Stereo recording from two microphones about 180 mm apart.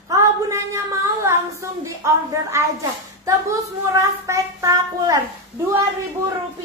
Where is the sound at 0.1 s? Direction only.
15° right (ahead or behind).